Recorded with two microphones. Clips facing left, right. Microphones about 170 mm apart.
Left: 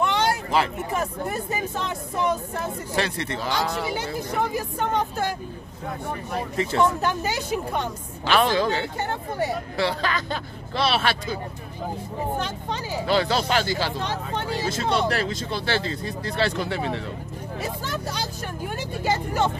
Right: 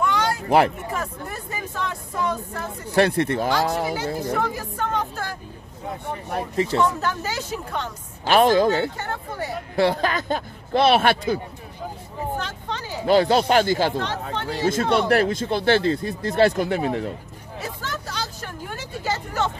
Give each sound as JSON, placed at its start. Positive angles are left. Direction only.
{"t": 0.0, "sound": "a sound", "side_deg": 25}
{"t": 0.9, "sound": "speech", "side_deg": 20}
{"t": 3.0, "sound": "speech", "side_deg": -50}
{"t": 3.9, "sound": "speech", "side_deg": 20}
{"t": 6.5, "sound": "speech", "side_deg": -35}
{"t": 6.8, "sound": "speech", "side_deg": 15}
{"t": 8.3, "sound": "speech", "side_deg": -45}
{"t": 8.9, "sound": "speech", "side_deg": 20}
{"t": 9.8, "sound": "speech", "side_deg": -50}
{"t": 12.4, "sound": "speech", "side_deg": 15}
{"t": 13.0, "sound": "speech", "side_deg": -45}
{"t": 17.8, "sound": "speech", "side_deg": 15}